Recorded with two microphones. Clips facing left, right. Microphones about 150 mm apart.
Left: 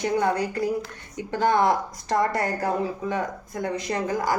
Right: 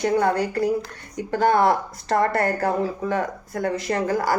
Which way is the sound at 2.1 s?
60° right (ahead or behind).